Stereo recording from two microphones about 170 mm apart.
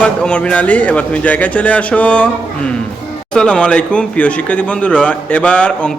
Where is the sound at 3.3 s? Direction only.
5° left (ahead or behind).